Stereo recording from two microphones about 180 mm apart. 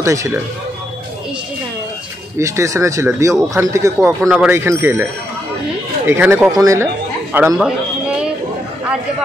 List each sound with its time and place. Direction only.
0.0 s speech: 15° right (ahead or behind)
2.3 s speech: 15° right (ahead or behind)
4.2 s speech: 5° right (ahead or behind)
6.0 s speech: 10° right (ahead or behind)
7.5 s a sound: 5° right (ahead or behind)